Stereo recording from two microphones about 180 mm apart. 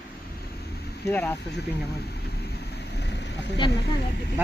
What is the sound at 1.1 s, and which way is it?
Speech, 10° left (ahead or behind).